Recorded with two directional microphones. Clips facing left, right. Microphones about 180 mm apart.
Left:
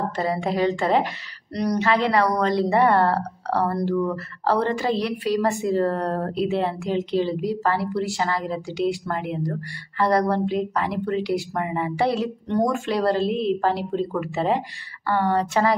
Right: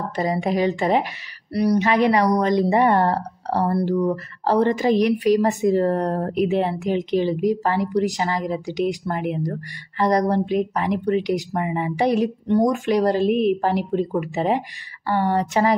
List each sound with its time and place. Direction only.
0.1 s speech: 15° right (ahead or behind)